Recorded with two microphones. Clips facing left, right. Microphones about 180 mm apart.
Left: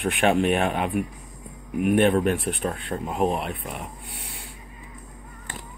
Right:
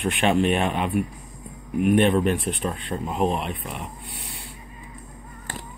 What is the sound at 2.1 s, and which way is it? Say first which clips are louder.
Speech: even; 15° right (ahead or behind).